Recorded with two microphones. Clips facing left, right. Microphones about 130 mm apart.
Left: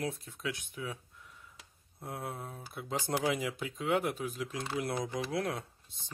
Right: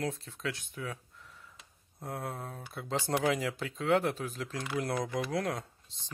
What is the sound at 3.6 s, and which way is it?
Speech, 15° left (ahead or behind).